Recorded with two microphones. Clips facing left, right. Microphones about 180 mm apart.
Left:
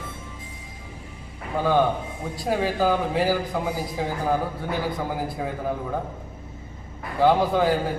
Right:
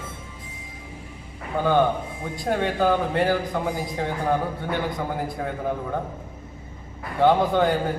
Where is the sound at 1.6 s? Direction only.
Centre (ahead or behind).